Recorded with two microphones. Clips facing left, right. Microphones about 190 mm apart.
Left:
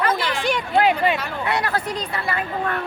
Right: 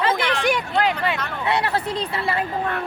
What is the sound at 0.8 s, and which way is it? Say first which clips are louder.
Speech: left 4 dB; 15° left (ahead or behind).